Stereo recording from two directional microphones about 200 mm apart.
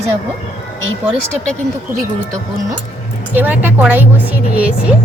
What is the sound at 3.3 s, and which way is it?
A woman's voice, 10° right (ahead or behind).